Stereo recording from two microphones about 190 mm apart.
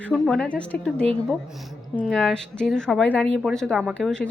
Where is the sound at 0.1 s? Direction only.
5° left (ahead or behind).